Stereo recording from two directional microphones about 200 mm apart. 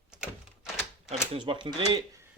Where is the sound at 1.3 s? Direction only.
25° right (ahead or behind).